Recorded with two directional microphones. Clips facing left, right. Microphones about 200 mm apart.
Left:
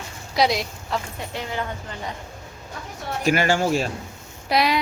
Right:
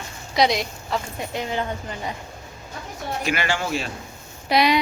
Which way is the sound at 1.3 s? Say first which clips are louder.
Right 3 dB; 20° right (ahead or behind).